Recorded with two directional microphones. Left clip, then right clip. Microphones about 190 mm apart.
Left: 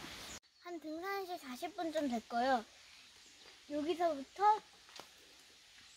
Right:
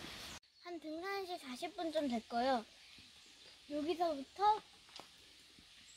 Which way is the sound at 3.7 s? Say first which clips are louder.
Left 2 dB; centre (ahead or behind).